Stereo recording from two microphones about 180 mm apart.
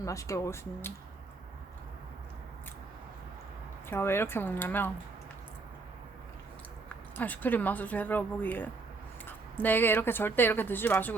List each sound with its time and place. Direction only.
0.0 s speech: 15° left (ahead or behind)
3.8 s speech: 15° left (ahead or behind)
6.8 s speech: 10° left (ahead or behind)